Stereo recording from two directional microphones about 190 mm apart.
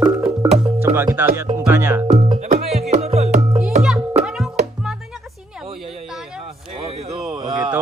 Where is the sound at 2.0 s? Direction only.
25° right (ahead or behind).